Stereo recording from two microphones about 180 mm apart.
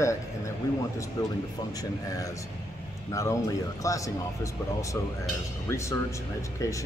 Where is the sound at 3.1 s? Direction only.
20° left (ahead or behind).